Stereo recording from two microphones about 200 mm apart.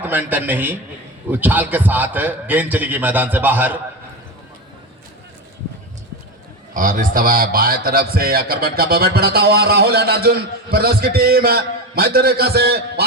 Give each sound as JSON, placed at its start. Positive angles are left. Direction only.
{"t": 0.0, "sound": "a man's voice", "side_deg": -10}
{"t": 6.7, "sound": "a man's voice", "side_deg": -45}